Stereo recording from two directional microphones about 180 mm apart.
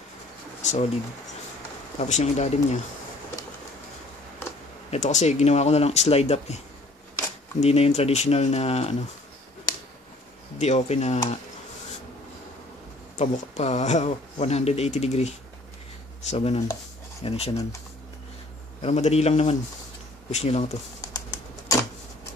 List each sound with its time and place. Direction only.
0.6 s a sound: 40° left (ahead or behind)
2.0 s speech: 40° left (ahead or behind)
4.9 s speech: 40° left (ahead or behind)
7.6 s speech: 35° left (ahead or behind)
10.6 s speech: 40° left (ahead or behind)
13.2 s speech: 35° left (ahead or behind)
18.8 s speech: 35° left (ahead or behind)
21.0 s bird: 20° left (ahead or behind)